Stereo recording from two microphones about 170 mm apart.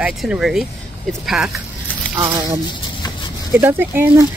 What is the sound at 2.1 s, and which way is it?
Speech, 25° right (ahead or behind).